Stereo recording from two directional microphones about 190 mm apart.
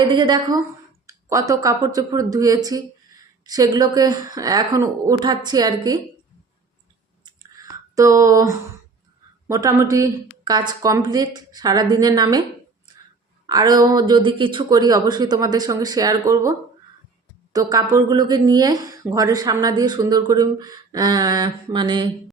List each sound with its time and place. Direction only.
0.1 s speech: 20° right (ahead or behind)
7.3 s a sound: 20° right (ahead or behind)
9.5 s speech: 15° right (ahead or behind)
13.5 s speech: 20° right (ahead or behind)